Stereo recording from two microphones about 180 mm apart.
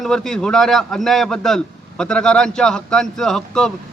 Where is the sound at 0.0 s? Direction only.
5° left (ahead or behind).